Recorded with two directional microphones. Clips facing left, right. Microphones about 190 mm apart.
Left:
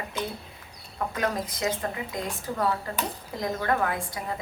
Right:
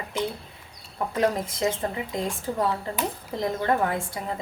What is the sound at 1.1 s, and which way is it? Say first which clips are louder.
A woman's voice: right 6 dB; 30° right (ahead or behind).